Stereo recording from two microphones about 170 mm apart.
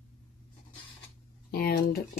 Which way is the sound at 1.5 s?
65° left (ahead or behind).